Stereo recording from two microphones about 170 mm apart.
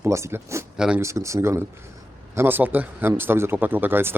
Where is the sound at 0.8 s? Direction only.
5° right (ahead or behind).